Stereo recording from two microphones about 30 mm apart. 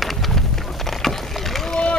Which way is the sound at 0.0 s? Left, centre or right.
Centre.